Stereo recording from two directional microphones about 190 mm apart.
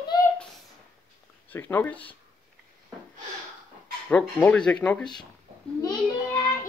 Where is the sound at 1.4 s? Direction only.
10° left (ahead or behind).